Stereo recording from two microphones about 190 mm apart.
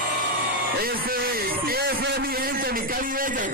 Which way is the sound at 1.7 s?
55° right (ahead or behind).